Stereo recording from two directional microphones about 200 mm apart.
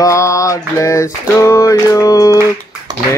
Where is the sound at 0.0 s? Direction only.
15° left (ahead or behind).